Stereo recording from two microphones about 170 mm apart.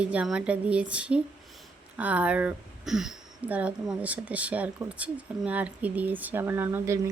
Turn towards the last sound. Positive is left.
turn(degrees=-15)  # may be behind; listen again after turning